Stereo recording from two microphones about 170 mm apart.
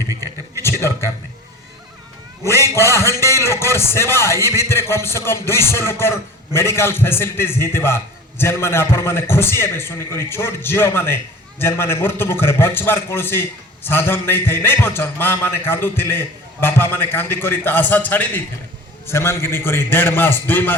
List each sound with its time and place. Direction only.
0.1 s a man's voice: 20° right (ahead or behind)
2.4 s a man's voice: 15° left (ahead or behind)